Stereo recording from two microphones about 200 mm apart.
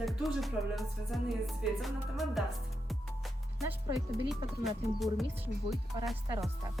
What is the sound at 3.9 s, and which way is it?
Speech, centre (ahead or behind).